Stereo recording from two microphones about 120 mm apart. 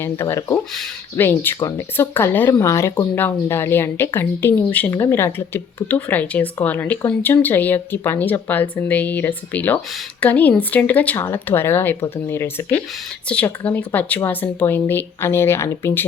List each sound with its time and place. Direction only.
0.0 s a woman's voice: 20° left (ahead or behind)